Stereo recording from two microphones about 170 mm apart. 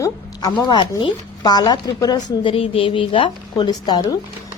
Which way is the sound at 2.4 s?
35° left (ahead or behind).